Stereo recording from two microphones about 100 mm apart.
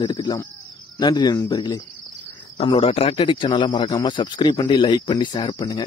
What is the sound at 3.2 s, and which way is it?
Speech, 55° left (ahead or behind).